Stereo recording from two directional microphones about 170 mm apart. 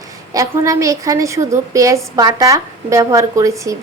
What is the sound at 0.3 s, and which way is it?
A woman's voice, 20° right (ahead or behind).